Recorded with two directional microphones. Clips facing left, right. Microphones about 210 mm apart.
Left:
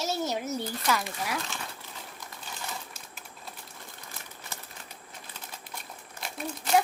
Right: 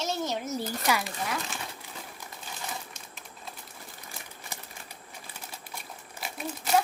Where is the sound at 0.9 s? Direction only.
15° right (ahead or behind).